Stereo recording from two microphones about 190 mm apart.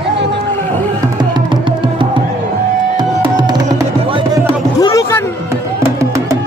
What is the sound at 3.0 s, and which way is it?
Music, 20° right (ahead or behind).